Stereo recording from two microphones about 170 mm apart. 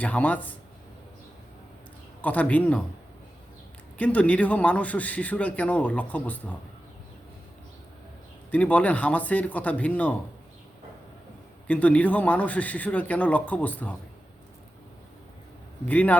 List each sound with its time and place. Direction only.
0.0 s a man's voice: 10° left (ahead or behind)
2.2 s a man's voice: 10° left (ahead or behind)
3.9 s a man's voice: 10° left (ahead or behind)
8.4 s a man's voice: 10° left (ahead or behind)
11.7 s a man's voice: 10° left (ahead or behind)
15.9 s a man's voice: 10° left (ahead or behind)